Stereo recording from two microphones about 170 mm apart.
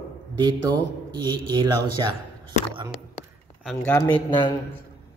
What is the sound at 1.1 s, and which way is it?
Speech, 30° right (ahead or behind).